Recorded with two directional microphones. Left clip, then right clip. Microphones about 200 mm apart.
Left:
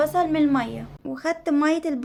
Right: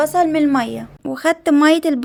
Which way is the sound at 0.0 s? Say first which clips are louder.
Right 5 dB; 35° right (ahead or behind).